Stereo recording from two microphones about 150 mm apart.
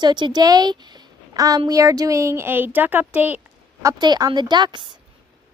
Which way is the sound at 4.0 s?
30° right (ahead or behind).